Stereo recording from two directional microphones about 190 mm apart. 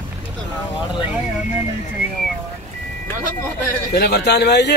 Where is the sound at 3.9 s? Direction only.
60° left (ahead or behind).